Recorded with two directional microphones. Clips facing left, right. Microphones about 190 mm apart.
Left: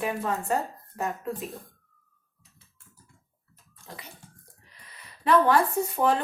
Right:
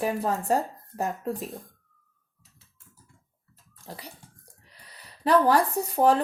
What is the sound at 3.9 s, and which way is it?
Speech, 35° right (ahead or behind).